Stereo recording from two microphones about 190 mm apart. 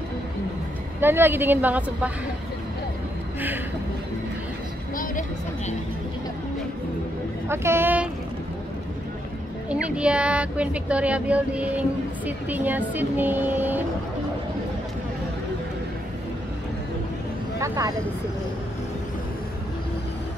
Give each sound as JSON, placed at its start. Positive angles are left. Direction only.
{"t": 1.0, "sound": "speech", "side_deg": -10}
{"t": 7.4, "sound": "speech", "side_deg": -15}
{"t": 9.7, "sound": "speech", "side_deg": -5}
{"t": 17.6, "sound": "speech", "side_deg": -15}